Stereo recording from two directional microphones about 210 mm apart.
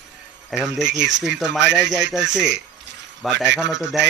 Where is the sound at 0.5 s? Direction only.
Centre (ahead or behind).